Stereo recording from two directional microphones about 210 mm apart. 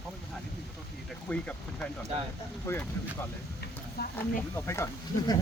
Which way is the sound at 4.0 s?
50° left (ahead or behind).